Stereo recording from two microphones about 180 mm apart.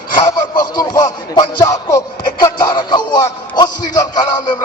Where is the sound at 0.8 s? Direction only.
20° left (ahead or behind).